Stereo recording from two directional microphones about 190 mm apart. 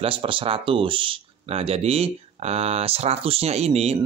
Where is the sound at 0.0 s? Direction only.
30° right (ahead or behind).